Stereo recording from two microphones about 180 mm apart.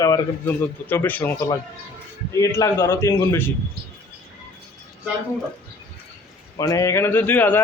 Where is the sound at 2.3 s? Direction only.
15° left (ahead or behind).